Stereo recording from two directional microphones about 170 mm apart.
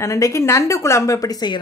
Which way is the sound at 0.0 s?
20° left (ahead or behind).